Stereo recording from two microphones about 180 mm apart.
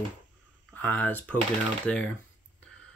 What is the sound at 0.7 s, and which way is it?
Speech, 10° left (ahead or behind).